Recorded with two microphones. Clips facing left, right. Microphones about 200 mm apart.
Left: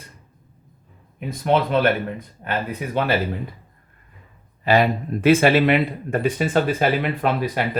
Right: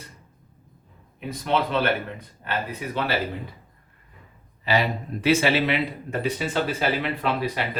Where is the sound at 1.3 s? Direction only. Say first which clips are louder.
Left 5 dB; 50° left (ahead or behind).